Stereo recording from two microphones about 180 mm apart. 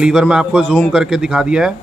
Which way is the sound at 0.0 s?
5° right (ahead or behind).